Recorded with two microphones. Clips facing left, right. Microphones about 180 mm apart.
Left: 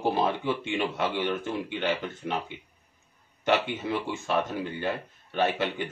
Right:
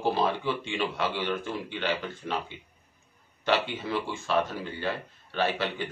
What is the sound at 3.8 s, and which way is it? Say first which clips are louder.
Speech: left 1 dB; 20° left (ahead or behind).